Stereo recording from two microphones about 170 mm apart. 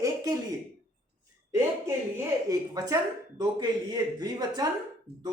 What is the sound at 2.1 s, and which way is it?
Speech, 20° right (ahead or behind).